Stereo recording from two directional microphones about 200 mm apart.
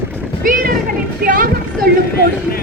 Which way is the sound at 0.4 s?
45° right (ahead or behind).